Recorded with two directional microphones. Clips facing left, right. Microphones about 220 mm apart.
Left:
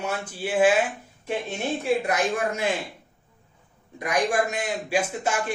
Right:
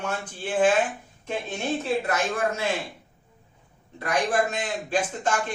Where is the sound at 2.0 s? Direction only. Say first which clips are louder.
Left 1 dB; 15° left (ahead or behind).